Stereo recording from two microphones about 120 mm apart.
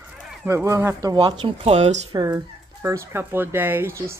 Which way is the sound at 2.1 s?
35° right (ahead or behind).